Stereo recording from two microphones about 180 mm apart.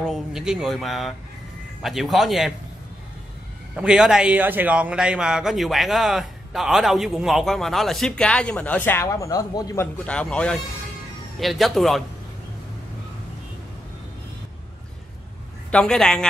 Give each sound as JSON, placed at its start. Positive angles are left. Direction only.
{"t": 0.0, "sound": "a man's voice", "side_deg": -5}
{"t": 3.7, "sound": "a man's voice", "side_deg": -5}
{"t": 10.0, "sound": "a man's voice", "side_deg": 5}
{"t": 15.7, "sound": "a man's voice", "side_deg": 5}